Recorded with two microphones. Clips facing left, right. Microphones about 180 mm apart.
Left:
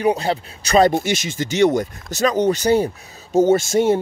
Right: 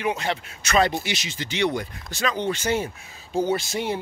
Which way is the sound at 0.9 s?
45° left (ahead or behind).